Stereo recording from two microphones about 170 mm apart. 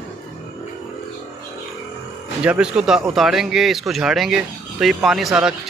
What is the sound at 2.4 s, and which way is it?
Speech, 5° right (ahead or behind).